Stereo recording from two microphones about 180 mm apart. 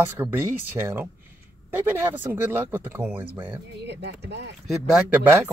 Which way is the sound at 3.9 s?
70° right (ahead or behind).